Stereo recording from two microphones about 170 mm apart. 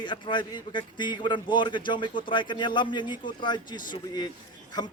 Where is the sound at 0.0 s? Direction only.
30° left (ahead or behind).